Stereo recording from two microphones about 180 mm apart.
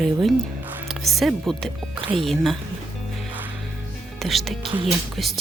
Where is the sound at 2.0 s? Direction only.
30° right (ahead or behind).